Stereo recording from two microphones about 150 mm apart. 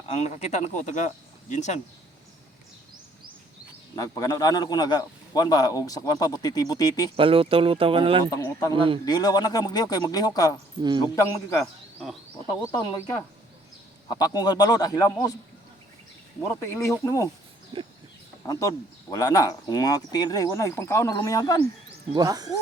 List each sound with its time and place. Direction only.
0.2 s speech: 50° left (ahead or behind)
3.9 s a man's voice: 25° left (ahead or behind)
7.2 s speech: 35° right (ahead or behind)
8.3 s a man's voice: 20° left (ahead or behind)
8.7 s speech: 35° right (ahead or behind)
9.0 s a man's voice: 25° left (ahead or behind)
11.6 s speech: centre (ahead or behind)
12.5 s a man's voice: 20° left (ahead or behind)
16.6 s a man's voice: 15° left (ahead or behind)
19.1 s a man's voice: 25° left (ahead or behind)
22.1 s speech: 25° right (ahead or behind)